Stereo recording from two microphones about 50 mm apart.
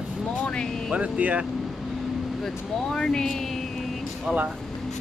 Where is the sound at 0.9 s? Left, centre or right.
Right.